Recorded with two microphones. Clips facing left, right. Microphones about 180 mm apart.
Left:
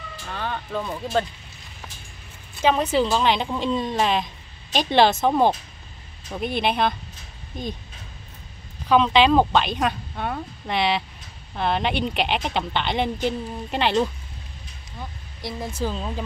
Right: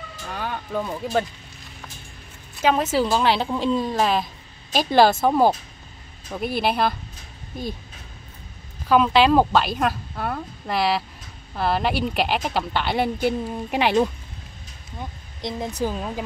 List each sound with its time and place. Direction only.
0.3 s music: 10° right (ahead or behind)
2.7 s a woman's voice: 5° right (ahead or behind)
8.8 s a woman's voice: 5° right (ahead or behind)